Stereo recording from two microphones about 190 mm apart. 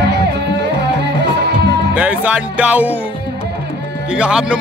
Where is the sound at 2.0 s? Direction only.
5° right (ahead or behind).